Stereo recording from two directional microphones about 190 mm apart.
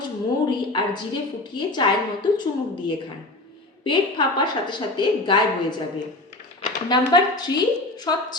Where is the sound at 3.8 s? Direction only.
25° left (ahead or behind).